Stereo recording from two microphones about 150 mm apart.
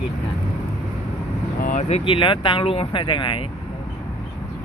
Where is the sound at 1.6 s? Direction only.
60° left (ahead or behind); by 3.4 s 35° left (ahead or behind).